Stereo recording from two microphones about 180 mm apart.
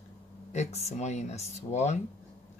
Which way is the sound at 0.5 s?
40° left (ahead or behind).